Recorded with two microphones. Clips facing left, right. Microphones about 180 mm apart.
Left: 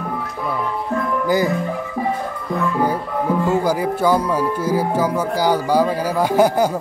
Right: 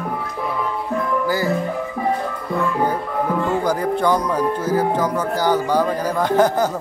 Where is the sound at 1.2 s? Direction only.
20° left (ahead or behind).